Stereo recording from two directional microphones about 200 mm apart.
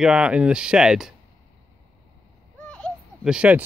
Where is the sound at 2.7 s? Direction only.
5° left (ahead or behind).